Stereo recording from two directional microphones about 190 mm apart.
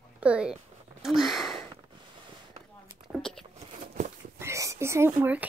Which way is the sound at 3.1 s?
Centre (ahead or behind).